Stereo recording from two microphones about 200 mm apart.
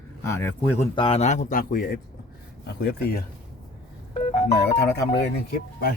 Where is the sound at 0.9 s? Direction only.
30° left (ahead or behind); by 3.2 s 55° left (ahead or behind).